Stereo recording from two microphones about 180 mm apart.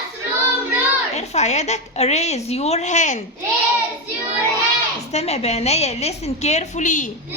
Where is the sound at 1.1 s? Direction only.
40° left (ahead or behind).